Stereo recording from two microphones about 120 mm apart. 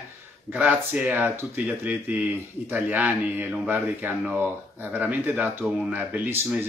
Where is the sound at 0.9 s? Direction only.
15° right (ahead or behind).